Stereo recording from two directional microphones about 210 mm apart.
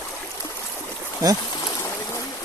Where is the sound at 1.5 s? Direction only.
15° left (ahead or behind).